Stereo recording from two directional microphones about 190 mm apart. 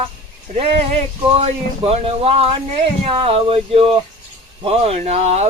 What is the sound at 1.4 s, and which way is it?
Speech, 30° right (ahead or behind).